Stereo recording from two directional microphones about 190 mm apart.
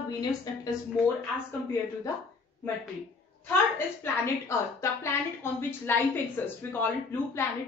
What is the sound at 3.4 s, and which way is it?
A woman's voice, 10° left (ahead or behind).